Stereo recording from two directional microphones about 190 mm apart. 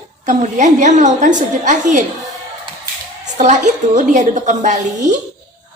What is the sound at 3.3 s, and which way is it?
Speech, 40° right (ahead or behind).